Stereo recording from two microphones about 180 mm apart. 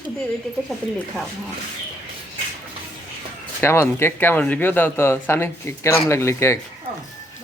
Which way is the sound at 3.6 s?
15° left (ahead or behind).